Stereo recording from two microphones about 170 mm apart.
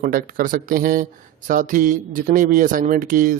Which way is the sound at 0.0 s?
55° right (ahead or behind).